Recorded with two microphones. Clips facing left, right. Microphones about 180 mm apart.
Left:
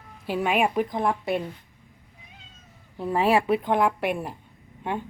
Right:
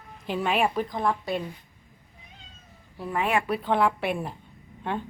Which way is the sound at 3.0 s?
30° left (ahead or behind).